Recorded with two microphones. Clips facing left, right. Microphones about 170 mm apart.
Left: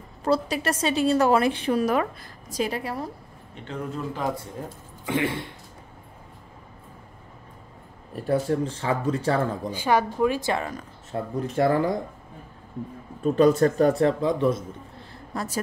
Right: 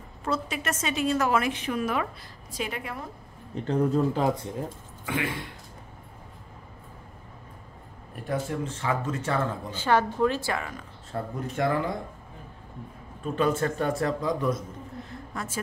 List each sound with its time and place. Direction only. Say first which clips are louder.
0.2 s a woman's voice: left 6 dB; 35° left (ahead or behind)
3.6 s speech: right 8 dB; 30° right (ahead or behind)
5.0 s speech: left 5 dB; 25° left (ahead or behind)
8.3 s a woman's voice: left 6 dB; 35° left (ahead or behind)
9.4 s speech: left 3 dB; 10° left (ahead or behind)
10.5 s speech: left 4 dB; 30° left (ahead or behind)
13.2 s a man's voice: left 7 dB; 40° left (ahead or behind)